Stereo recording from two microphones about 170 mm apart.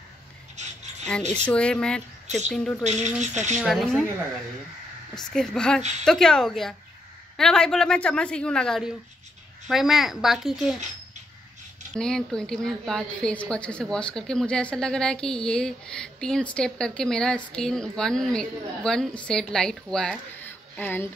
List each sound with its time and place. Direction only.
1.5 s a woman's voice: 5° left (ahead or behind)
2.8 s speech: 40° right (ahead or behind)
3.5 s a woman's voice: centre (ahead or behind)
5.1 s a woman's voice: 5° left (ahead or behind)
5.8 s speech: 40° right (ahead or behind)
6.0 s a woman's voice: 5° left (ahead or behind)
12.0 s a woman's voice: 5° left (ahead or behind)